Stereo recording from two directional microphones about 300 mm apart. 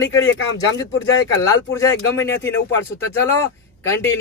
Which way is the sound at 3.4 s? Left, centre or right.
Centre.